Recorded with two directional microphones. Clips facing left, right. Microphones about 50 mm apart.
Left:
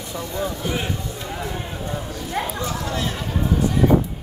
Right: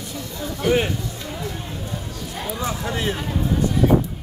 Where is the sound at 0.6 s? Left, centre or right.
Right.